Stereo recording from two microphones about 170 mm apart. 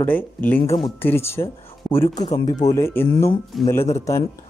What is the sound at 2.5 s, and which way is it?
Speech, 20° left (ahead or behind).